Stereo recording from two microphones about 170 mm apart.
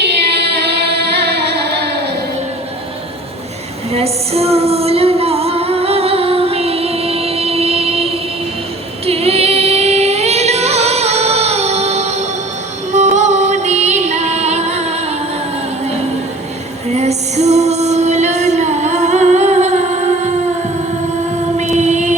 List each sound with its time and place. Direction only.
0.0 s music: 75° right (ahead or behind)
3.9 s music: 35° right (ahead or behind)
9.0 s singing: 35° right (ahead or behind)
12.9 s music: 45° right (ahead or behind)
16.9 s music: 40° right (ahead or behind)
21.6 s music: 45° right (ahead or behind)